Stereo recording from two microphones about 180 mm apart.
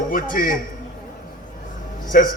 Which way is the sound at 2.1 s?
50° left (ahead or behind).